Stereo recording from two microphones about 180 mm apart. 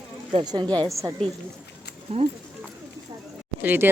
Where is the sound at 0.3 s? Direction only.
25° right (ahead or behind).